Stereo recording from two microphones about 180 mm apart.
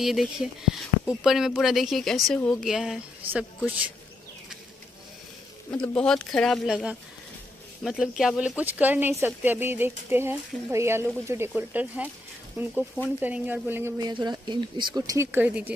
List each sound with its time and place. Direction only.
0.0 s speech: centre (ahead or behind)
5.7 s speech: 5° left (ahead or behind)